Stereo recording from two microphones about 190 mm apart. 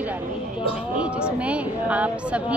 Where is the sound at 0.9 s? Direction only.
5° right (ahead or behind).